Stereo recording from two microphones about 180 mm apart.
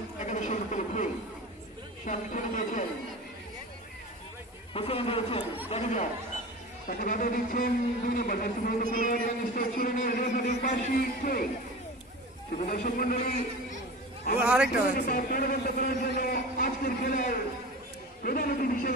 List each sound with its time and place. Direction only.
0.2 s a sound: 40° left (ahead or behind)
2.0 s a man's voice: 45° left (ahead or behind)
4.7 s a man's voice: 30° left (ahead or behind)
6.9 s a man's voice: 50° left (ahead or behind)
12.5 s a man's voice: 45° left (ahead or behind)
14.4 s a man's voice: 5° right (ahead or behind)
14.7 s a man's voice: 50° left (ahead or behind)